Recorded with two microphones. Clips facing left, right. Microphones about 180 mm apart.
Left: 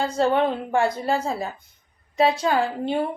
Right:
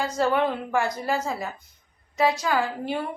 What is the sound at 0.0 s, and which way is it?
A woman's voice, 30° left (ahead or behind).